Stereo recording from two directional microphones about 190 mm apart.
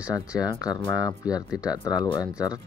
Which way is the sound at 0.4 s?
20° left (ahead or behind).